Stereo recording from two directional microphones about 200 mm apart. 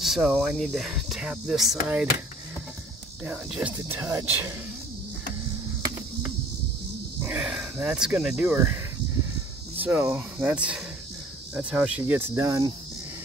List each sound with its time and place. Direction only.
0.0 s speech: 5° right (ahead or behind)
3.3 s speech: 5° right (ahead or behind)
7.2 s speech: 10° right (ahead or behind)
9.8 s speech: 10° right (ahead or behind)